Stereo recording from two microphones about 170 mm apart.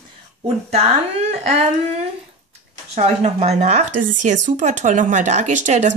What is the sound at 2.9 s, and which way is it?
Speech, 40° right (ahead or behind).